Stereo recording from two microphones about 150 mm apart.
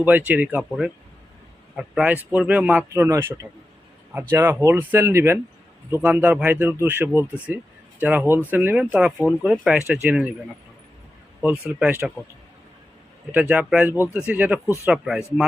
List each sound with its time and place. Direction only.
0.0 s speech: 10° right (ahead or behind)
11.4 s speech: 5° right (ahead or behind)
13.3 s speech: 10° right (ahead or behind)